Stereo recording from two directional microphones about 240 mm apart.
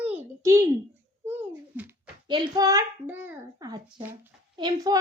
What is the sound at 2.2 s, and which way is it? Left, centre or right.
A child's voice, centre.